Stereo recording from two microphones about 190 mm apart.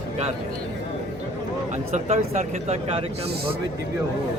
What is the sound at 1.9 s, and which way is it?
Speech, 35° right (ahead or behind).